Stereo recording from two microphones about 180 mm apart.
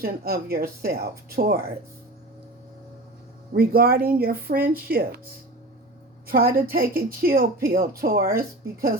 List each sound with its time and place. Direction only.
0.0 s speech: 55° right (ahead or behind)
3.5 s speech: 55° right (ahead or behind)
6.2 s speech: 55° right (ahead or behind)